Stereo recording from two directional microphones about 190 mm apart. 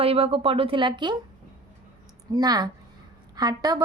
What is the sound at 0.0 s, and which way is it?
A woman's voice, 30° right (ahead or behind).